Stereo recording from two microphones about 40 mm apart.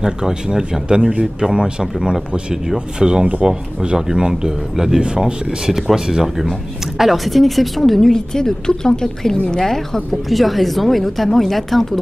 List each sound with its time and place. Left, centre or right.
0.0 s a woman's voice: centre
10.3 s a woman's voice: centre